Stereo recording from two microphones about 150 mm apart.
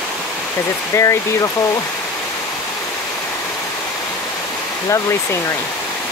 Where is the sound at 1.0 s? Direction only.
20° left (ahead or behind).